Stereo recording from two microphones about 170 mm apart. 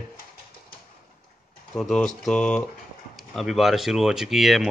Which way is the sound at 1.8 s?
5° left (ahead or behind).